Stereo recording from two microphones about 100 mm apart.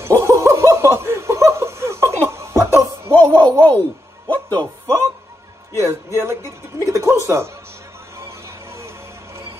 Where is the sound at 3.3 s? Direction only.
15° left (ahead or behind).